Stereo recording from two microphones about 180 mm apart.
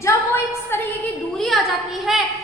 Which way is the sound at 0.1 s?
15° left (ahead or behind).